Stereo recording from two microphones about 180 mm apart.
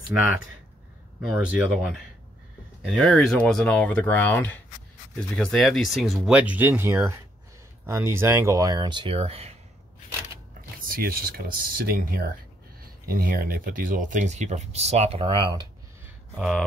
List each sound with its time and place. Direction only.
1.2 s speech: 5° right (ahead or behind); by 9.6 s 35° right (ahead or behind)
10.8 s speech: 55° right (ahead or behind); by 15.6 s 30° right (ahead or behind)
16.3 s speech: centre (ahead or behind)